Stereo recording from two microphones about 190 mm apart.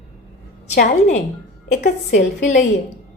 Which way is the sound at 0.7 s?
40° left (ahead or behind).